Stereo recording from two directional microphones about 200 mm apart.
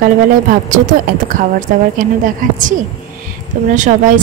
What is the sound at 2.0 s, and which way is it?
Speech, 40° right (ahead or behind).